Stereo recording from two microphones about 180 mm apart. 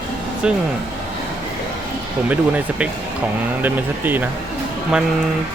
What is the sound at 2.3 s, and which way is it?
Speech, 10° right (ahead or behind).